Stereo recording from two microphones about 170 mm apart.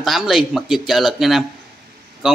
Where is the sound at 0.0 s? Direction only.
Centre (ahead or behind).